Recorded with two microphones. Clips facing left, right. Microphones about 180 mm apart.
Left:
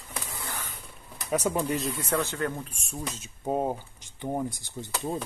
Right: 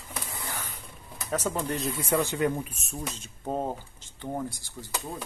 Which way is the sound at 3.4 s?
10° left (ahead or behind).